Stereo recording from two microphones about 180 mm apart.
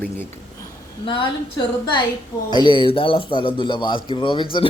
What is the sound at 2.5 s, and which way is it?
A man's voice, 25° left (ahead or behind).